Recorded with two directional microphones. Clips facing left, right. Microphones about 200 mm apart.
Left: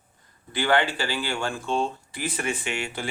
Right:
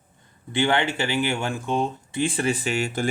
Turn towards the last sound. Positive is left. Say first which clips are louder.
# right 6 dB
turn(degrees=-40)  # may be behind; listen again after turning